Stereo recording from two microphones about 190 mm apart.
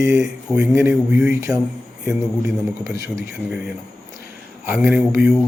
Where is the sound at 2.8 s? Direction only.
Centre (ahead or behind).